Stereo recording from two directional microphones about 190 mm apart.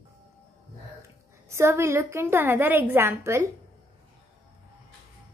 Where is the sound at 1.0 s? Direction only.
15° right (ahead or behind).